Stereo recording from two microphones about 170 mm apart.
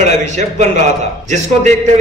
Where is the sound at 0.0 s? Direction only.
45° right (ahead or behind).